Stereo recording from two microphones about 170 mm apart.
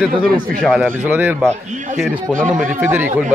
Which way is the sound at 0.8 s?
10° right (ahead or behind).